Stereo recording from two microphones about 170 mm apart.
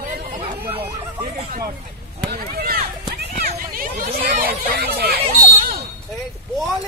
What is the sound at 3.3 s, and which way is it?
Hubbub, 55° right (ahead or behind).